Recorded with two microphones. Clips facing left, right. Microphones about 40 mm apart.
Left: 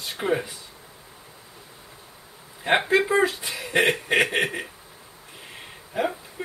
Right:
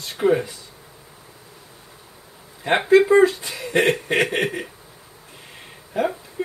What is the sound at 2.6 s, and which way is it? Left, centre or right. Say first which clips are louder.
Speech: right 5 dB; centre.